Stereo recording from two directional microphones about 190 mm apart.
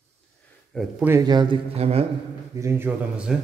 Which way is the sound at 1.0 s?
20° right (ahead or behind).